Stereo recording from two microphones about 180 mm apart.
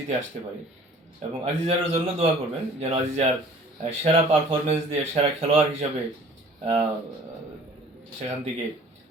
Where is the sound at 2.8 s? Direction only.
35° right (ahead or behind).